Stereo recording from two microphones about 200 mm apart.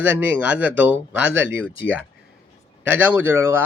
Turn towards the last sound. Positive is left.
turn(degrees=-10)  # may be behind; listen again after turning